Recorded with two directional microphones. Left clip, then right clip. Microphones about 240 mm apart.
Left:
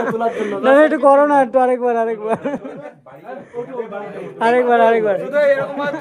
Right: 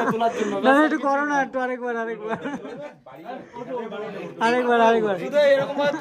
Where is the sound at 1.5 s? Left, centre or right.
Centre.